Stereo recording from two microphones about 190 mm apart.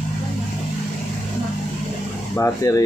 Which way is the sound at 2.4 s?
15° left (ahead or behind).